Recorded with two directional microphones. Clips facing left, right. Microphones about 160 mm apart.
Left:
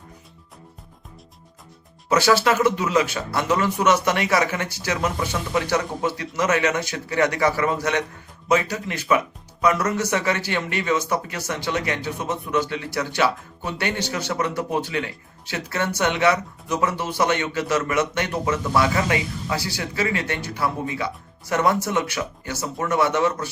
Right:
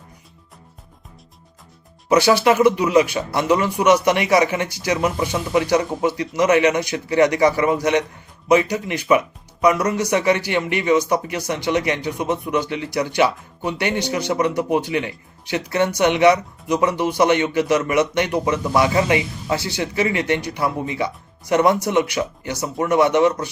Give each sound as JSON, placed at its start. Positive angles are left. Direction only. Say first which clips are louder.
{"t": 2.0, "sound": "speech", "louder": "right 3 dB", "side_deg": -15}